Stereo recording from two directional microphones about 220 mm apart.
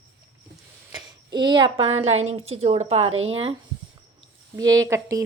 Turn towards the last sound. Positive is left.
turn(degrees=-15)  # may be behind; listen again after turning